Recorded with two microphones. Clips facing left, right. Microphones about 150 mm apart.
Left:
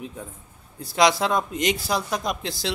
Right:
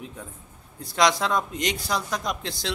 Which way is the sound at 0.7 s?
5° left (ahead or behind).